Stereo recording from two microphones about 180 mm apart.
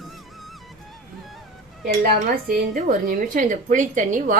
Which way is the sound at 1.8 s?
60° right (ahead or behind).